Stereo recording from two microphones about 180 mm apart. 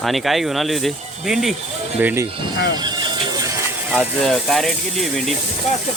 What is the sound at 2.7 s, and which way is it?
Music, 25° right (ahead or behind).